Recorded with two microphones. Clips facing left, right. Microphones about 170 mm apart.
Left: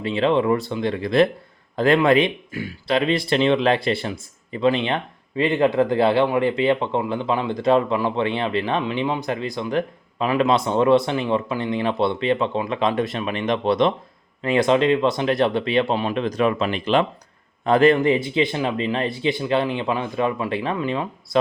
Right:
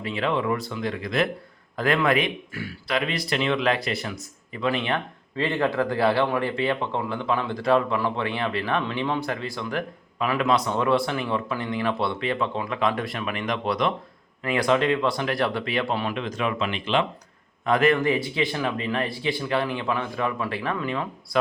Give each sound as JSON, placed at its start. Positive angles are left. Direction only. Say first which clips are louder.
{"t": 0.0, "sound": "speech", "louder": "left 6 dB", "side_deg": 25}
{"t": 16.1, "sound": "speech", "louder": "left 6 dB", "side_deg": 35}
{"t": 17.7, "sound": "speech", "louder": "left 5 dB", "side_deg": 30}